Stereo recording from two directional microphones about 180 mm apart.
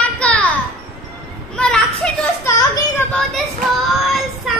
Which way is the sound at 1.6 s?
5° left (ahead or behind).